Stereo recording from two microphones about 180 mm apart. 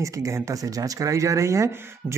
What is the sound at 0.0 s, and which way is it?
Speech, 15° right (ahead or behind).